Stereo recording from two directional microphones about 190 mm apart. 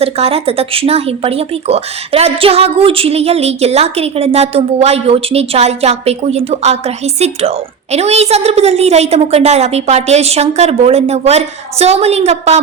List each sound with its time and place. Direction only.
0.0 s speech: 30° right (ahead or behind)